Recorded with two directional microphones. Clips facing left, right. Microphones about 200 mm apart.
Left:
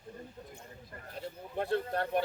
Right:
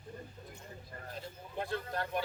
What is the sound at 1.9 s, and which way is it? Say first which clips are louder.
Speech: left 5 dB; 60° left (ahead or behind).